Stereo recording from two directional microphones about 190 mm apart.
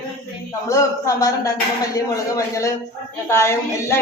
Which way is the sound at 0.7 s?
15° left (ahead or behind).